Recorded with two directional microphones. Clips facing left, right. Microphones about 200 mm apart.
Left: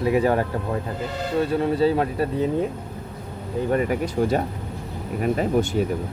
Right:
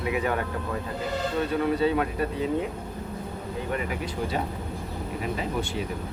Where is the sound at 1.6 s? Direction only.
30° left (ahead or behind).